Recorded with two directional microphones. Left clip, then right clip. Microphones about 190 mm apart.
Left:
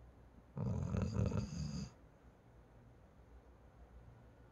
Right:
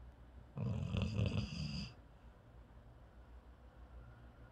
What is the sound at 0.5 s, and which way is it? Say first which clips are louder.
Dog: left 1 dB; 25° left (ahead or behind).